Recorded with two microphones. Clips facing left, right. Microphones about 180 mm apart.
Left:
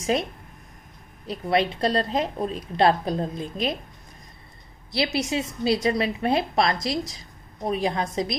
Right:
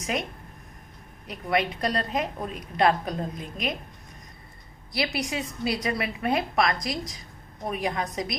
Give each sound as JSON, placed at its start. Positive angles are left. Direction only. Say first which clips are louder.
{"t": 0.0, "sound": "a woman's voice", "louder": "left 5 dB", "side_deg": 30}
{"t": 4.9, "sound": "a woman's voice", "louder": "left 4 dB", "side_deg": 25}